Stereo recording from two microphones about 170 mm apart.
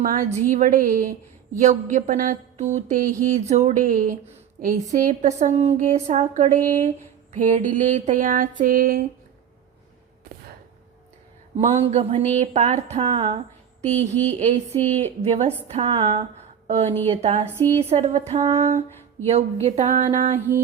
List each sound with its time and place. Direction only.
0.0 s a woman's voice: 55° right (ahead or behind)
11.5 s a woman's voice: 40° right (ahead or behind)
13.8 s a woman's voice: 40° right (ahead or behind)
18.3 s a sound: 20° right (ahead or behind)
19.2 s a woman's voice: 40° right (ahead or behind)